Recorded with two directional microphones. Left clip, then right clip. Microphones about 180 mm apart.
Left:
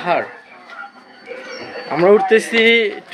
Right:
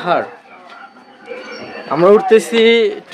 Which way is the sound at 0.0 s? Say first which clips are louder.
Right 2 dB; 15° right (ahead or behind).